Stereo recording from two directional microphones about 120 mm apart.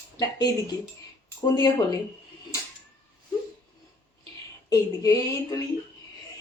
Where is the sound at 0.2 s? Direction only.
30° left (ahead or behind).